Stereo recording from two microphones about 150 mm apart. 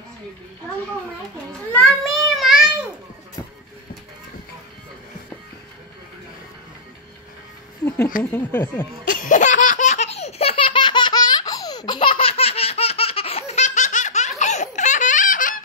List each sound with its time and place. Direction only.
1.7 s a sound: 5° left (ahead or behind)
8.2 s speech: 15° left (ahead or behind)
9.0 s laughter: 65° left (ahead or behind)